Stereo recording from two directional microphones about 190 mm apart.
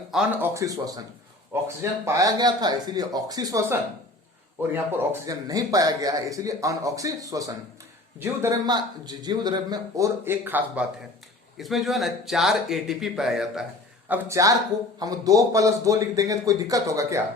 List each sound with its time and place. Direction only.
0.1 s a man's voice: 5° right (ahead or behind)
14.1 s a man's voice: 15° right (ahead or behind)